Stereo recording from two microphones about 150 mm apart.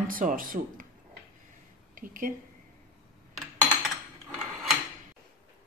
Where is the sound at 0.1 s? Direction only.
65° right (ahead or behind).